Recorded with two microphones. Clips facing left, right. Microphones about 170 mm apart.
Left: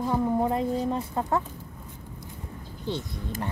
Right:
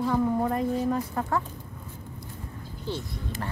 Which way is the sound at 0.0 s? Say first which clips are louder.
Even; 15° left (ahead or behind).